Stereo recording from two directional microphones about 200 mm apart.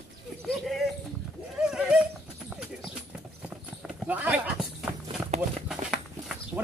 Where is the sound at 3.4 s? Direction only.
5° right (ahead or behind).